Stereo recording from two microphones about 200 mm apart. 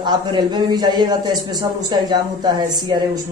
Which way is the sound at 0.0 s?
20° right (ahead or behind).